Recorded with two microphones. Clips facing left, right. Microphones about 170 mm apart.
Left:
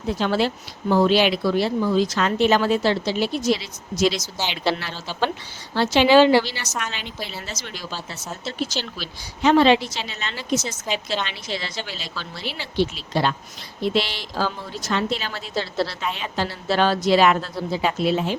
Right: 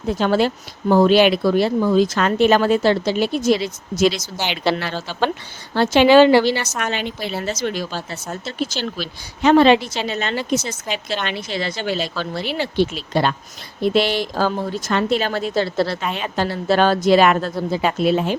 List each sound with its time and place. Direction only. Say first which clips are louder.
0.2 s a woman's voice: right 5 dB; 50° right (ahead or behind)